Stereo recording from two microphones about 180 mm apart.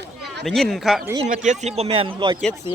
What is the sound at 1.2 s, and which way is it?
A man's voice, 45° right (ahead or behind).